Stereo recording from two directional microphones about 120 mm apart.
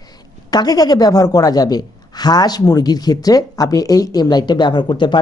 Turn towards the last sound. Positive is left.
turn(degrees=40)  # may be behind; listen again after turning